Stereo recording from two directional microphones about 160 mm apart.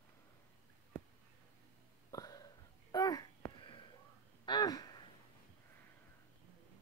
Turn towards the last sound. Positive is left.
turn(degrees=25)  # may be behind; listen again after turning